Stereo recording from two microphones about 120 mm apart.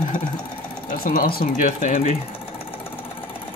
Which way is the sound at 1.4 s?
90° left.